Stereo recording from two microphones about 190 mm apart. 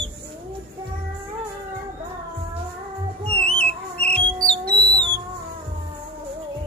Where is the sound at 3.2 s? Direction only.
30° right (ahead or behind).